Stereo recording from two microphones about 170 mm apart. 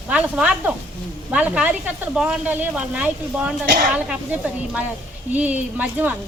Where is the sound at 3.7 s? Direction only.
60° right (ahead or behind).